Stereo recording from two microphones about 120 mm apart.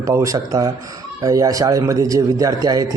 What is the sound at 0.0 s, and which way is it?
Speech, 25° right (ahead or behind).